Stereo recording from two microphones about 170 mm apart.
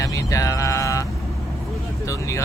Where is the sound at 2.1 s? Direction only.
15° left (ahead or behind).